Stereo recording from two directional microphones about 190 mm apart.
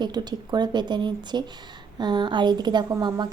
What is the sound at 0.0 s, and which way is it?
A woman's voice, 20° right (ahead or behind).